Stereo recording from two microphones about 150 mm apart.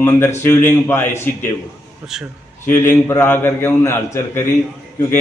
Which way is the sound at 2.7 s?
15° left (ahead or behind).